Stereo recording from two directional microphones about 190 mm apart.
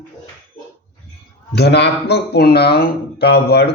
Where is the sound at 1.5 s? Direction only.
60° left (ahead or behind).